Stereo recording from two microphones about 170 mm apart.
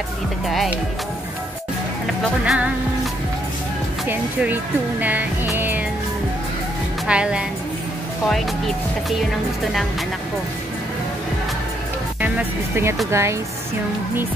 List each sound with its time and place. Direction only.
0.5 s a woman's voice: centre (ahead or behind)
2.4 s a woman's voice: 5° right (ahead or behind)
4.1 s speech: 10° right (ahead or behind)
5.0 s music: 10° right (ahead or behind)
7.1 s a woman's voice: 5° right (ahead or behind)
12.2 s speech: 10° right (ahead or behind)